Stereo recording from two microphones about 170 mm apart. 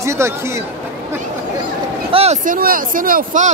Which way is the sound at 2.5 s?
55° right (ahead or behind).